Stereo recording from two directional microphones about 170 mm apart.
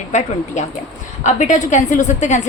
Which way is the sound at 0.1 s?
45° left (ahead or behind).